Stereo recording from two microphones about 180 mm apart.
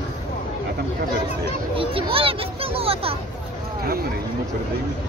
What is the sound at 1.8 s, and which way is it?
A child's voice, 30° right (ahead or behind).